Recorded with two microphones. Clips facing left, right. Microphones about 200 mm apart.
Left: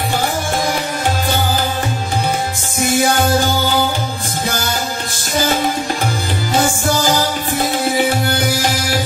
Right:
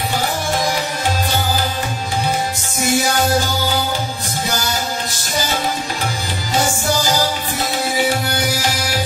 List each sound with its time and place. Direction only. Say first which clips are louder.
2.8 s music: left 2 dB; 50° left (ahead or behind)
6.6 s music: left 1 dB; 50° left (ahead or behind)